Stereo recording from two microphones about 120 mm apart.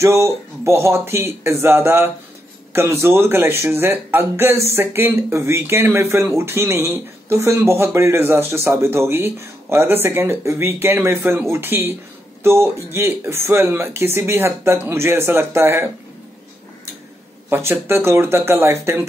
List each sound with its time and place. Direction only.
0.0 s speech: 25° right (ahead or behind)
17.5 s speech: 20° right (ahead or behind)